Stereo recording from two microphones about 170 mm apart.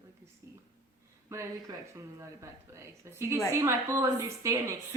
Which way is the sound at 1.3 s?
20° right (ahead or behind).